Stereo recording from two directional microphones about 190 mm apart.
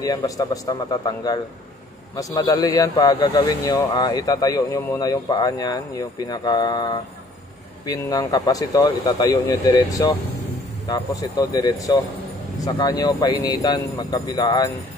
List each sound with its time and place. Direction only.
0.0 s a man's voice: 20° left (ahead or behind)